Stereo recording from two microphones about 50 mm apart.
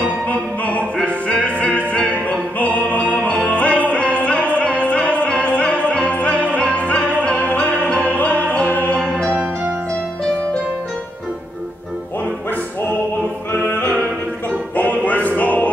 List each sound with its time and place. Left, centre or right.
0.3 s music: left
8.9 s music: centre
13.5 s music: left